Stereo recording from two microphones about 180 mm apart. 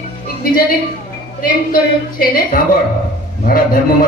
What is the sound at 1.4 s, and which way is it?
A man's voice, 50° left (ahead or behind).